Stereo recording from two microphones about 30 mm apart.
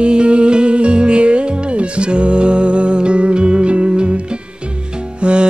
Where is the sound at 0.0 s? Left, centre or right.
Right.